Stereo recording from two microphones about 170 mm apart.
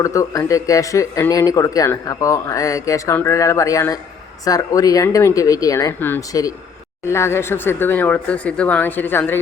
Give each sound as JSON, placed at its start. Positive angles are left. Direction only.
{"t": 0.0, "sound": "speech", "side_deg": 20}